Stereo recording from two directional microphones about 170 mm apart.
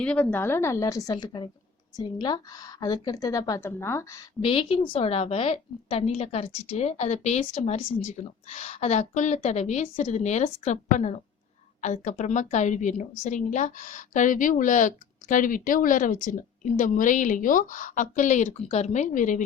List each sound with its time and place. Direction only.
0.0 s a woman's voice: 5° left (ahead or behind)
4.4 s a woman's voice: 35° left (ahead or behind); by 19.5 s 50° left (ahead or behind)